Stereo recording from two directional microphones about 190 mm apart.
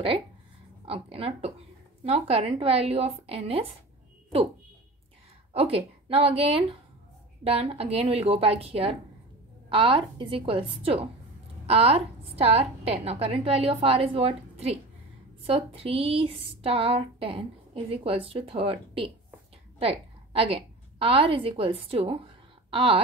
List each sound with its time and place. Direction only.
0.8 s a woman's voice: 30° right (ahead or behind)
5.5 s a woman's voice: 30° right (ahead or behind)